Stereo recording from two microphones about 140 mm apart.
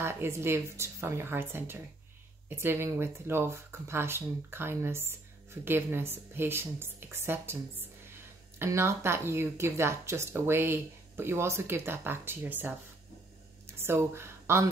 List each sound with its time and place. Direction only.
0.0 s speech: 15° right (ahead or behind)
13.7 s speech: 15° right (ahead or behind)